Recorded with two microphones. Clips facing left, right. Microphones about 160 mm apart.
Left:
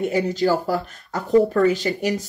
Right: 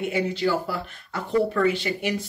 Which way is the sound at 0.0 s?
40° left (ahead or behind).